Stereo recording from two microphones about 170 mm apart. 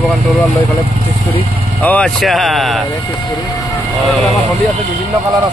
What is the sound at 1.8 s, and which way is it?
Speech, 10° left (ahead or behind).